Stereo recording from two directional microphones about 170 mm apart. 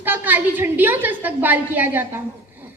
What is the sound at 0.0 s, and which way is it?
A woman's voice, 10° right (ahead or behind).